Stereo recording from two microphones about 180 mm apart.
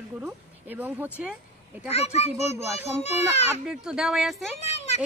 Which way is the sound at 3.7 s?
5° right (ahead or behind).